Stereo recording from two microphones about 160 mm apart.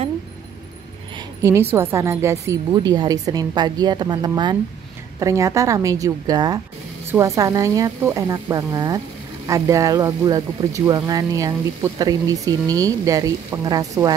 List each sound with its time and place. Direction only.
1.1 s speech: 20° right (ahead or behind)